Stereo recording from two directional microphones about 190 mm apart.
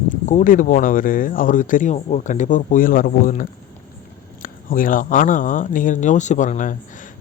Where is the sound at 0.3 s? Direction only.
40° left (ahead or behind).